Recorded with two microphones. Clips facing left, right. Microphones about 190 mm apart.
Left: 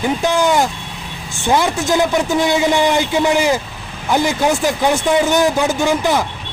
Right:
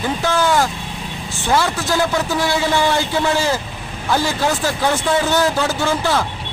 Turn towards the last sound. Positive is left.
turn(degrees=15)  # may be behind; listen again after turning